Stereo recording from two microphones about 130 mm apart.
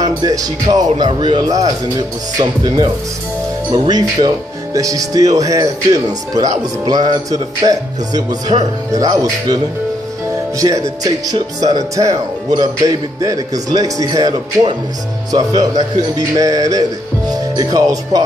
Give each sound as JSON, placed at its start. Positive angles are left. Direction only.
{"t": 0.0, "sound": "speech", "side_deg": -30}
{"t": 10.6, "sound": "speech", "side_deg": -25}